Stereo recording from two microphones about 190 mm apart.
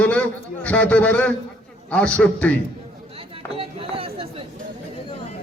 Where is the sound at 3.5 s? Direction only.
30° right (ahead or behind).